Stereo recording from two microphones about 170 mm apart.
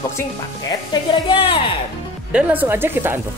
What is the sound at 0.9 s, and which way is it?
Speech, 30° left (ahead or behind).